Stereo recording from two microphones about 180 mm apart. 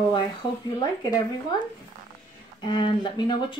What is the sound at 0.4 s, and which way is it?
Speech, 25° left (ahead or behind).